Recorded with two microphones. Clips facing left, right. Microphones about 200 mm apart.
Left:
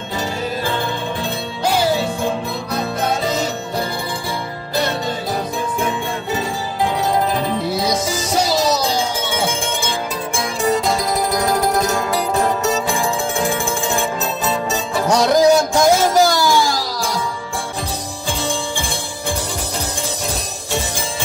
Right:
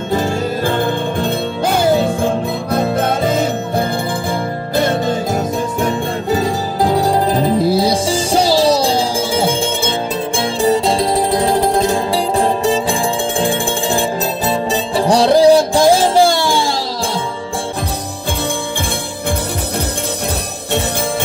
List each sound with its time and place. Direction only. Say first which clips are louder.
0.1 s music: right 6 dB; 50° right (ahead or behind); by 16.8 s 30° right (ahead or behind)